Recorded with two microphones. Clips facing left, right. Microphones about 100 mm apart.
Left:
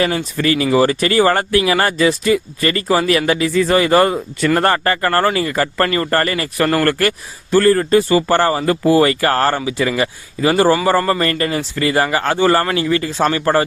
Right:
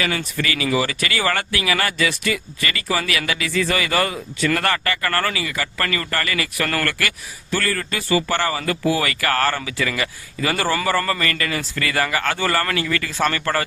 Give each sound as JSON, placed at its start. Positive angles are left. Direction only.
{"t": 0.3, "sound": "speech", "side_deg": 35}
{"t": 5.4, "sound": "speech", "side_deg": 45}